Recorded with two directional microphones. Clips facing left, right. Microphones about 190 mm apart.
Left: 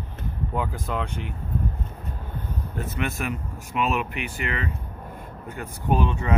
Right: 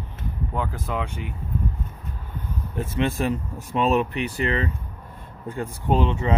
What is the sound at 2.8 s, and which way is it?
Speech, 30° right (ahead or behind).